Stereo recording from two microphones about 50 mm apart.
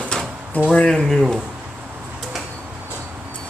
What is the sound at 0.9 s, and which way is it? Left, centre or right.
Speech, centre.